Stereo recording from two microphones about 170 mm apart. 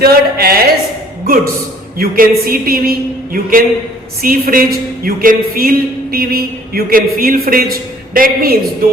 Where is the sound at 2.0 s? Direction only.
60° right (ahead or behind).